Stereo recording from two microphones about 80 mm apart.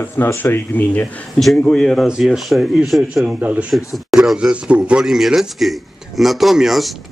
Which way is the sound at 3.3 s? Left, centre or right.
Centre.